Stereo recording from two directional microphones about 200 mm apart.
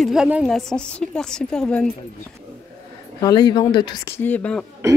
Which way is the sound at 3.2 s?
20° left (ahead or behind).